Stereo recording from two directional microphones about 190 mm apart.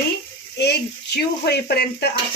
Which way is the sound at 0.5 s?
60° left (ahead or behind).